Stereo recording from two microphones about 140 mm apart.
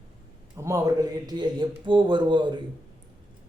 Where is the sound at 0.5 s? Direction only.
20° right (ahead or behind).